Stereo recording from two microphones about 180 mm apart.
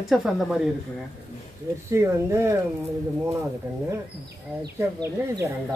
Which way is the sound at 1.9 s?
15° right (ahead or behind).